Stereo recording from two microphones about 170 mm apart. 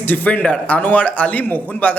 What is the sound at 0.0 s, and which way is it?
A man's voice, 10° left (ahead or behind).